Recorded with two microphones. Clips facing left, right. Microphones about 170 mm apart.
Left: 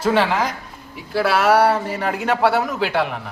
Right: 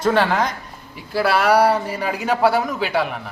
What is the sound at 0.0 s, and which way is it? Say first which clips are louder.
Speech: even; centre (ahead or behind).